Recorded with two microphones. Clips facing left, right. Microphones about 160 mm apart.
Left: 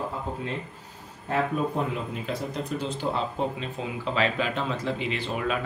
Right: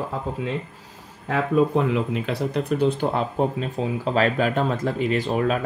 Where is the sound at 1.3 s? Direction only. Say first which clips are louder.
Right 6 dB; 85° right.